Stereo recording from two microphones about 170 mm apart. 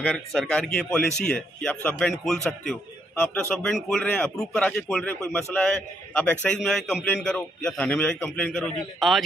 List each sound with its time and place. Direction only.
0.0 s speech: centre (ahead or behind)